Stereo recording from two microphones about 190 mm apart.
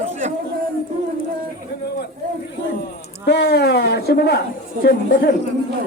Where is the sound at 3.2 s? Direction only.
60° left (ahead or behind).